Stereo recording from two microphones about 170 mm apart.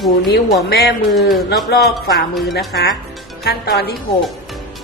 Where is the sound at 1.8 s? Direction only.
75° left (ahead or behind).